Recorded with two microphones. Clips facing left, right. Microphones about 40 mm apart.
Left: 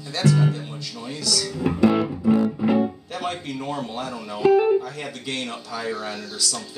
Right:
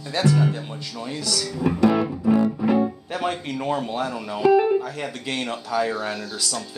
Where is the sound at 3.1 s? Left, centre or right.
Centre.